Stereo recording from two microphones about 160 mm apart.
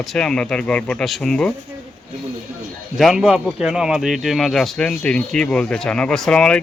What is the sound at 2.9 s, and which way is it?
Speech, centre (ahead or behind).